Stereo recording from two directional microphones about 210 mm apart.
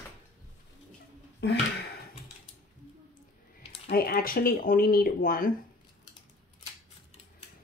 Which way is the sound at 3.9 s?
45° left (ahead or behind).